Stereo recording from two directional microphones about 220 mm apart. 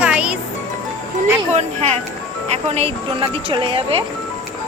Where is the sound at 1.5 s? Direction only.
30° right (ahead or behind).